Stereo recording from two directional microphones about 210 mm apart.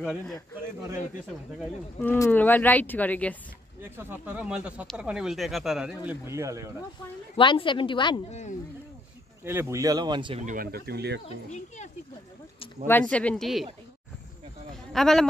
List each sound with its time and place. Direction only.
2.0 s speech: 10° left (ahead or behind)
3.8 s speech: 10° right (ahead or behind)
7.3 s a woman's voice: 25° left (ahead or behind)
9.4 s speech: 10° right (ahead or behind)
10.4 s speech: 40° right (ahead or behind)
11.2 s a child's voice: 35° left (ahead or behind)
12.8 s speech: 10° left (ahead or behind)
14.9 s speech: centre (ahead or behind)